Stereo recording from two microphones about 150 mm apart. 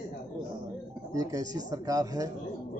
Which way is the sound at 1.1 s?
25° right (ahead or behind).